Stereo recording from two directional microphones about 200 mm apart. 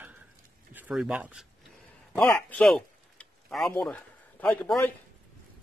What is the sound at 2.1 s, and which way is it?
Speech, 5° left (ahead or behind).